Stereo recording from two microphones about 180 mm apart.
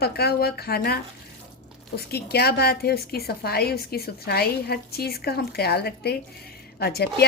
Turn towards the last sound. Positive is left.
turn(degrees=60)  # may be behind; listen again after turning